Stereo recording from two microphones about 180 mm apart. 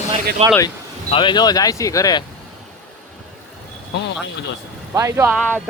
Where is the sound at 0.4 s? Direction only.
35° right (ahead or behind).